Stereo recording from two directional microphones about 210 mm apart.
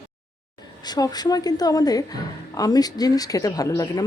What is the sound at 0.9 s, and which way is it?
Speech, 20° left (ahead or behind).